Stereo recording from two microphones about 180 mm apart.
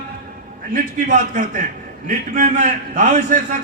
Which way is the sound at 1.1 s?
45° right (ahead or behind).